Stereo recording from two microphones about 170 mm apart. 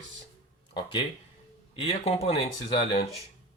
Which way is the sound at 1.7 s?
35° left (ahead or behind).